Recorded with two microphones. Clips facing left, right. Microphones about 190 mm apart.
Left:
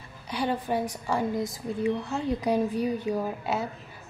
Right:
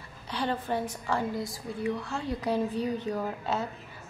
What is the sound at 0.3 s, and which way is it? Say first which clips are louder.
A woman's voice: left 3 dB; 10° left (ahead or behind).